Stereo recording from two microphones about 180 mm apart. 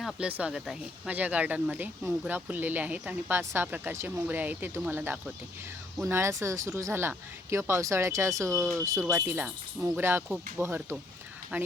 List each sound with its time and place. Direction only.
0.0 s speech: 5° right (ahead or behind)